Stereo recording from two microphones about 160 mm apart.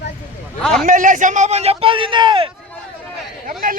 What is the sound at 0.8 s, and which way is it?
Speech, 55° right (ahead or behind).